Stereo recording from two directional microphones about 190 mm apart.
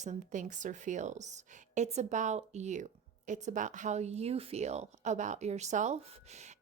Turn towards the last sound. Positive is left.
turn(degrees=-35)  # may be behind; listen again after turning